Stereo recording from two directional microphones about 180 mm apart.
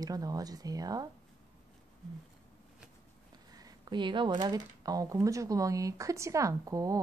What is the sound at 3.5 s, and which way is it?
Speech, 25° right (ahead or behind).